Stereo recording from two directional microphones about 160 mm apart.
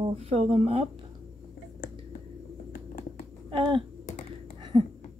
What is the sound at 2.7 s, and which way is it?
Patter, 60° left (ahead or behind).